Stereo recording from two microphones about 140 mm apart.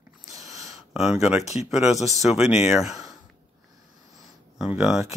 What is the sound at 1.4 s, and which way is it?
Speech, 50° left (ahead or behind).